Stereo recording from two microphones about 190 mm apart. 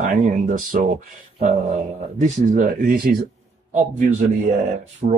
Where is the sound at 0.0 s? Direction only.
40° right (ahead or behind).